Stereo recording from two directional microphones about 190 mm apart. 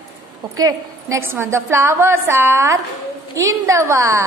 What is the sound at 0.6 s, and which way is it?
A woman's voice, 20° right (ahead or behind).